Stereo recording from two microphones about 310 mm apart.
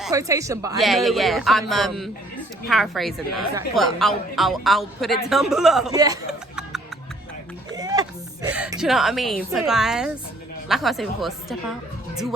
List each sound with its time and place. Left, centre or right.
0.0 s a woman's voice: centre
5.9 s music: centre
8.4 s a woman's voice: centre